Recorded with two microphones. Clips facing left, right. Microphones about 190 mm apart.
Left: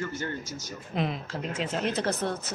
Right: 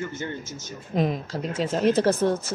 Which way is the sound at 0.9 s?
45° right (ahead or behind).